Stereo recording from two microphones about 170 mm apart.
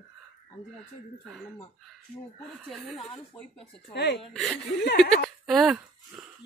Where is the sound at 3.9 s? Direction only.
80° left.